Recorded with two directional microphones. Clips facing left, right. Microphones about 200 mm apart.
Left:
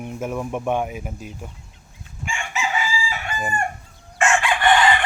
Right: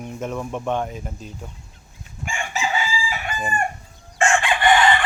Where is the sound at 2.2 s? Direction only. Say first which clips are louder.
Right 1 dB; 40° right (ahead or behind).